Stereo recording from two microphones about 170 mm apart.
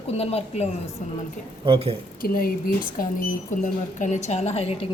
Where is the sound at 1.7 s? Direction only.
35° right (ahead or behind).